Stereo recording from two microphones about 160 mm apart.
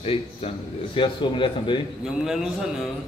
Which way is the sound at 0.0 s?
35° left (ahead or behind).